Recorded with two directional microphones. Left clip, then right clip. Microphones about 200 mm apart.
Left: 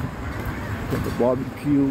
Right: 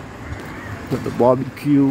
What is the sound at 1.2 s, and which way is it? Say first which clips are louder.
Speech: right 7 dB; 35° right (ahead or behind).